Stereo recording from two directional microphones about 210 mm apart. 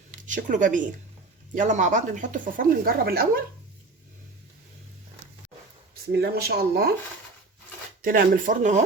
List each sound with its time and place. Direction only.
0.1 s speech: 35° right (ahead or behind)
6.1 s speech: 50° right (ahead or behind)
8.0 s speech: 40° right (ahead or behind)